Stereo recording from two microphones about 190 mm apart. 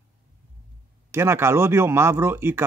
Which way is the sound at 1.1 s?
15° right (ahead or behind).